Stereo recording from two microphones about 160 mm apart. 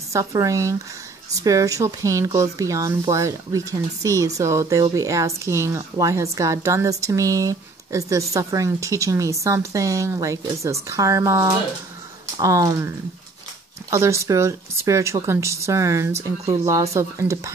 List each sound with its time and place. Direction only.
0.1 s a woman's voice: 20° right (ahead or behind)